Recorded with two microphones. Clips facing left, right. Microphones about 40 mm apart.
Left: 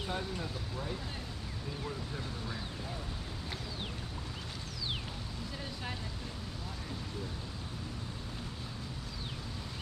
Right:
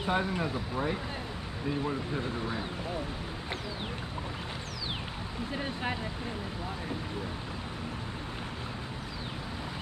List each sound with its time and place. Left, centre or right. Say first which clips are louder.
0.0 s speech: right 8 dB; right